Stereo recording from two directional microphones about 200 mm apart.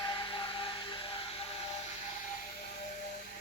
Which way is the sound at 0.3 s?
25° left (ahead or behind).